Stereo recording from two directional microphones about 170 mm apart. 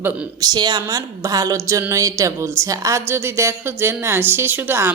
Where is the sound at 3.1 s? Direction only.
15° right (ahead or behind).